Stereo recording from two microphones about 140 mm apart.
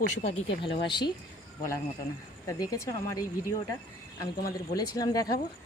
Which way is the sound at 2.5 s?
20° left (ahead or behind).